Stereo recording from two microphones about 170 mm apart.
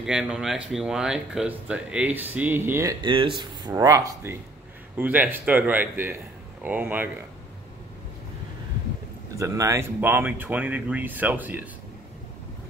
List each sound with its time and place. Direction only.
0.0 s speech: 5° right (ahead or behind)
3.0 s speech: 30° right (ahead or behind); by 7.1 s 10° right (ahead or behind)
9.3 s speech: 20° right (ahead or behind)